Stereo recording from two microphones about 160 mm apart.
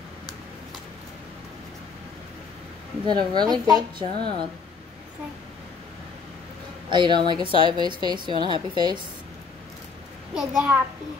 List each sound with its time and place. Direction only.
3.1 s a woman's voice: 25° right (ahead or behind)
6.9 s a woman's voice: 30° right (ahead or behind)
10.3 s a child's voice: 5° right (ahead or behind)